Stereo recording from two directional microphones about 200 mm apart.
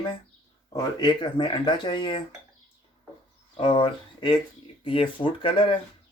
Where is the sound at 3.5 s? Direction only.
25° left (ahead or behind).